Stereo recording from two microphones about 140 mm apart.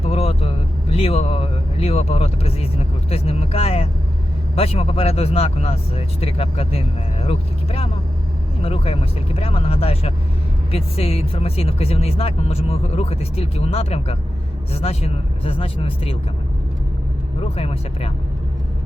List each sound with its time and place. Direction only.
0.0 s speech: 45° left (ahead or behind)
17.4 s speech: 45° left (ahead or behind)